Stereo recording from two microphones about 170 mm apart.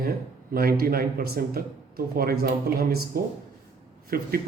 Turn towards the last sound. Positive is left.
turn(degrees=-60)  # may be behind; listen again after turning